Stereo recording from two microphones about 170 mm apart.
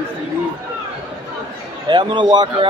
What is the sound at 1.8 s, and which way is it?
Speech, 25° right (ahead or behind).